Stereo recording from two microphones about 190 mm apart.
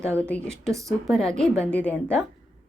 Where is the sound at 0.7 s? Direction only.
15° right (ahead or behind).